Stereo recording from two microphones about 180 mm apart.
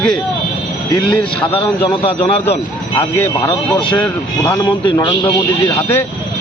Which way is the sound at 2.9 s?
15° left (ahead or behind).